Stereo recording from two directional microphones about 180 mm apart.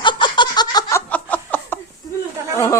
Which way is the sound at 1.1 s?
10° left (ahead or behind).